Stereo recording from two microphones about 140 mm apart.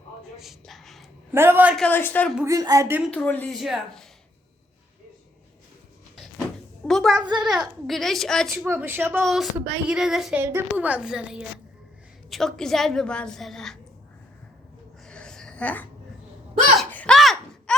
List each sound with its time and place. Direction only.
0.3 s a sound: centre (ahead or behind)
1.3 s a woman's voice: 15° right (ahead or behind)
1.7 s speech: 10° left (ahead or behind)
2.4 s speech: 25° right (ahead or behind)
3.1 s a woman's voice: 10° left (ahead or behind)
6.8 s a woman's voice: centre (ahead or behind)
8.5 s a woman's voice: 15° right (ahead or behind)
9.2 s a woman's voice: centre (ahead or behind)
15.0 s a sound: 5° left (ahead or behind)